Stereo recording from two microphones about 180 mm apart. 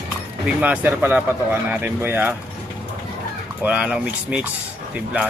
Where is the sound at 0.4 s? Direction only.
10° right (ahead or behind).